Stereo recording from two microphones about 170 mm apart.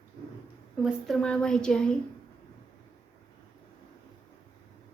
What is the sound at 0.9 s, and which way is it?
A woman's voice, centre (ahead or behind).